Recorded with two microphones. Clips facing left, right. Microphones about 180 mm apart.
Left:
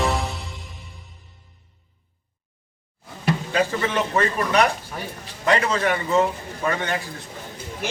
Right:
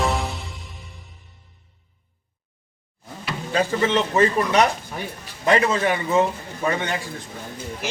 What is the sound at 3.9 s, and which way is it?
A man's voice, 20° right (ahead or behind).